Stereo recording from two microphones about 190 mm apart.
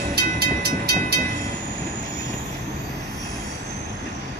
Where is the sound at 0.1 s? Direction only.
55° right (ahead or behind).